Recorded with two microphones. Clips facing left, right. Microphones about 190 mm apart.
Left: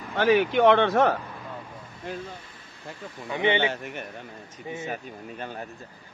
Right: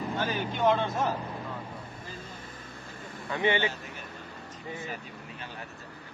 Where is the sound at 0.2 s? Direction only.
75° left (ahead or behind).